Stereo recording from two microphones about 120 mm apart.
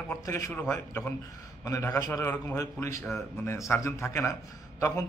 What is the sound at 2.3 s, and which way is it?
Speech, 15° left (ahead or behind).